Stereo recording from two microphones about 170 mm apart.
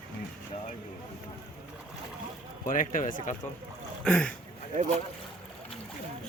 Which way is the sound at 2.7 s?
50° left (ahead or behind).